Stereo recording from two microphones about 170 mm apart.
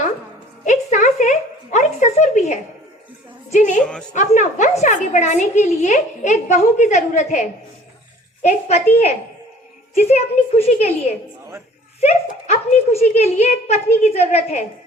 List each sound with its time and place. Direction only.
0.6 s a sound: 45° left (ahead or behind)
3.5 s a woman's voice: 45° left (ahead or behind)
11.9 s a child's voice: 40° left (ahead or behind)